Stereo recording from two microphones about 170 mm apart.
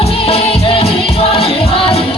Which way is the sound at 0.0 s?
35° left (ahead or behind).